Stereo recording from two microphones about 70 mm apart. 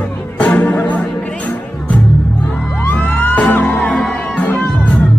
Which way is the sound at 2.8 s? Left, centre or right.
Left.